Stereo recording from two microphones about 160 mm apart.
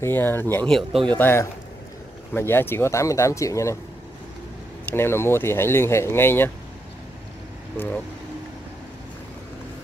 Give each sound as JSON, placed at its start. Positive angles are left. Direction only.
{"t": 0.0, "sound": "speech", "side_deg": 15}
{"t": 4.9, "sound": "speech", "side_deg": 15}
{"t": 7.7, "sound": "speech", "side_deg": 10}